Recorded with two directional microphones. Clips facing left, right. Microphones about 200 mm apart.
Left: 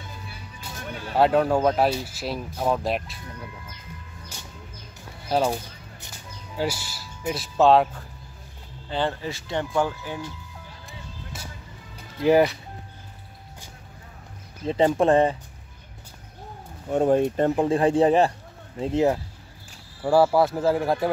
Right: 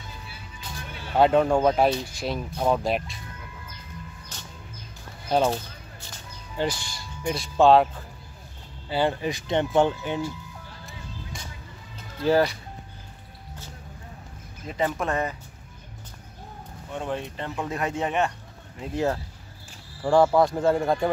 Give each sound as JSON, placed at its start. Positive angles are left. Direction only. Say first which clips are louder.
{"t": 1.1, "sound": "speech", "louder": "even", "side_deg": 5}
{"t": 4.3, "sound": "a sound", "louder": "left 3 dB", "side_deg": 10}
{"t": 5.3, "sound": "speech", "louder": "right 1 dB", "side_deg": 10}
{"t": 8.8, "sound": "speech", "louder": "right 2 dB", "side_deg": -10}
{"t": 11.3, "sound": "music", "louder": "left 1 dB", "side_deg": 5}
{"t": 12.2, "sound": "speech", "louder": "left 3 dB", "side_deg": 15}
{"t": 14.6, "sound": "speech", "louder": "left 8 dB", "side_deg": 30}
{"t": 16.9, "sound": "speech", "louder": "left 11 dB", "side_deg": 45}
{"t": 17.6, "sound": "speech", "louder": "left 7 dB", "side_deg": 30}
{"t": 18.8, "sound": "speech", "louder": "left 5 dB", "side_deg": 20}
{"t": 20.0, "sound": "speech", "louder": "even", "side_deg": 5}